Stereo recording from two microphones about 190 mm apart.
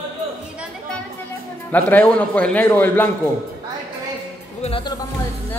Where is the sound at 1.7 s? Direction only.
10° left (ahead or behind).